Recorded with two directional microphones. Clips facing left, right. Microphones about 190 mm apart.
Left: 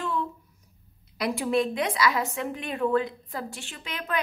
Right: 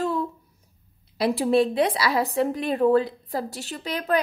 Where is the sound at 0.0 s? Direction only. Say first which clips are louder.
Right 4 dB; 40° right (ahead or behind).